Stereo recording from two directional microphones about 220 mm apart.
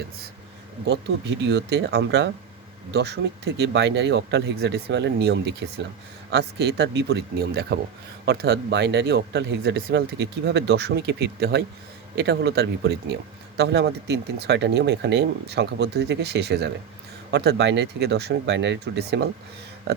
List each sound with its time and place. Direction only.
1.4 s speech: 55° right (ahead or behind)